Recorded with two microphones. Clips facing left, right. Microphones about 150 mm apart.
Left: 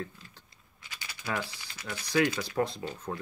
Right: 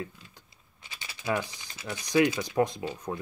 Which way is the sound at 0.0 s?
10° right (ahead or behind).